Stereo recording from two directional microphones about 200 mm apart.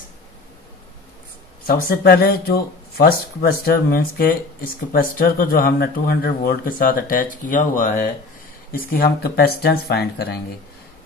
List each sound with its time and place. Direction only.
1.7 s speech: 45° left (ahead or behind)